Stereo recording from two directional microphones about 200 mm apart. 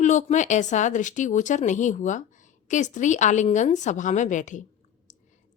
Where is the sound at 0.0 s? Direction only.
35° left (ahead or behind).